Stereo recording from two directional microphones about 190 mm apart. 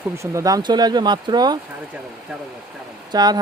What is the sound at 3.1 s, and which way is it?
Speech, 20° right (ahead or behind).